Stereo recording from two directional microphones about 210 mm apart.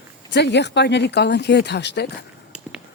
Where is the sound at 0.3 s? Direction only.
55° left (ahead or behind).